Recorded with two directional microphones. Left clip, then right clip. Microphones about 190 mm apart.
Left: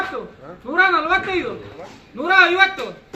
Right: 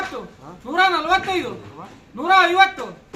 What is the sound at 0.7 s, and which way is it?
A man's voice, 20° right (ahead or behind).